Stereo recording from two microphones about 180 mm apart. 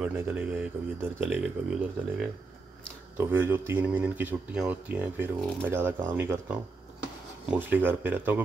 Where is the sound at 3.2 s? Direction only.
15° right (ahead or behind).